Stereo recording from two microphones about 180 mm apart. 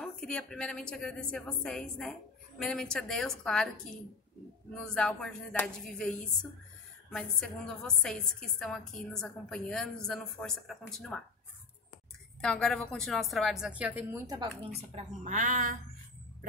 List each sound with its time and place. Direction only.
0.0 s a woman's voice: 5° left (ahead or behind)
12.4 s a woman's voice: 5° left (ahead or behind)
14.2 s a woman's voice: 25° right (ahead or behind)
15.2 s a woman's voice: 40° right (ahead or behind)